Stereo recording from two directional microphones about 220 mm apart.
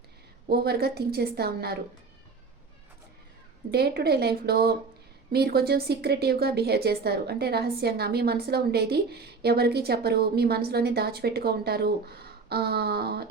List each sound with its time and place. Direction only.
0.4 s speech: 45° right (ahead or behind)
3.7 s speech: 45° right (ahead or behind)